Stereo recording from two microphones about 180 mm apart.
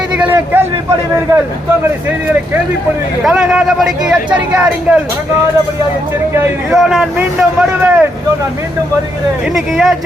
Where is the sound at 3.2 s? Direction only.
5° right (ahead or behind).